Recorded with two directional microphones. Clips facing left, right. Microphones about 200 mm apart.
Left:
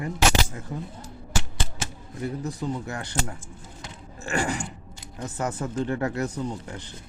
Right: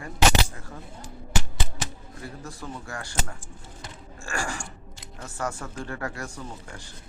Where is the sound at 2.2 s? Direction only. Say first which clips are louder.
Left 9 dB; 20° left (ahead or behind).